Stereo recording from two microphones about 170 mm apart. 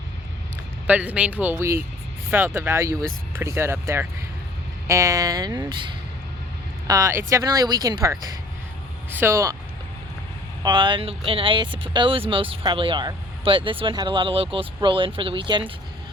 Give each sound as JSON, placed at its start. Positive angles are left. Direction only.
{"t": 0.9, "sound": "speech", "side_deg": -10}
{"t": 6.8, "sound": "speech", "side_deg": -20}
{"t": 10.6, "sound": "speech", "side_deg": -25}